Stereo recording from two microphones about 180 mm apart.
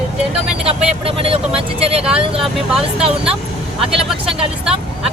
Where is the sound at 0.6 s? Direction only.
30° right (ahead or behind).